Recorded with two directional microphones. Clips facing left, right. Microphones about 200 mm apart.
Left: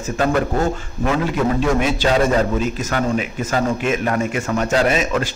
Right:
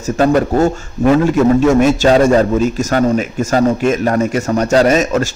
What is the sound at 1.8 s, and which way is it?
A man's voice, 45° right (ahead or behind).